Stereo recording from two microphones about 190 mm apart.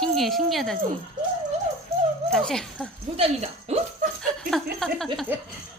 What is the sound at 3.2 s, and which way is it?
Speech, 30° right (ahead or behind).